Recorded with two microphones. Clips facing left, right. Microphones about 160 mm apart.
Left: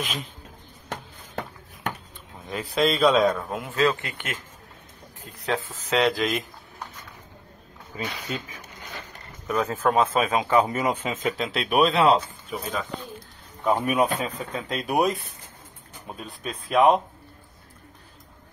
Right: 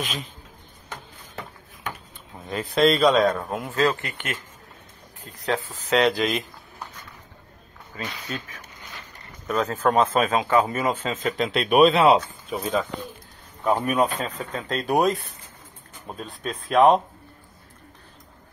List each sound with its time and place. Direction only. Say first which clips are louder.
0.0 s speech: right 1 dB; centre (ahead or behind)
0.8 s a sound: left 4 dB; 60° left (ahead or behind)
2.5 s speech: right 4 dB; 5° left (ahead or behind)
4.0 s speech: right 2 dB; 20° left (ahead or behind)
5.4 s speech: right 1 dB; centre (ahead or behind)
7.9 s speech: left 1 dB; 15° left (ahead or behind)
10.4 s speech: even; 20° left (ahead or behind); by 12.2 s centre (ahead or behind)
13.7 s speech: even; 5° left (ahead or behind)
16.2 s speech: right 3 dB; 5° left (ahead or behind)